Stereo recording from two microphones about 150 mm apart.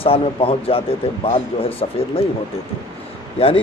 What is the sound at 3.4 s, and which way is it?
Speech, 40° left (ahead or behind).